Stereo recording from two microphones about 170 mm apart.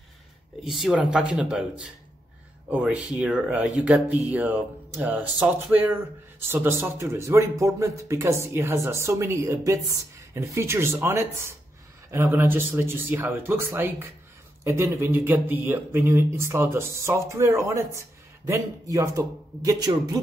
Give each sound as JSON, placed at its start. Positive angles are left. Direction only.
{"t": 0.7, "sound": "speech", "side_deg": 0}